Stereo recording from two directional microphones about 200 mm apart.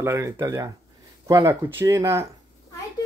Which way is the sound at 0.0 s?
15° right (ahead or behind).